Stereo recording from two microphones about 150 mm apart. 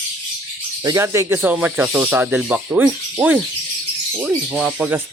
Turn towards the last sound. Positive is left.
turn(degrees=-5)  # may be behind; listen again after turning